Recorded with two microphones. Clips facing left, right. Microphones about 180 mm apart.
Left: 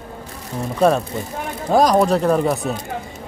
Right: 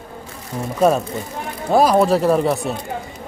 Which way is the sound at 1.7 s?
5° right (ahead or behind).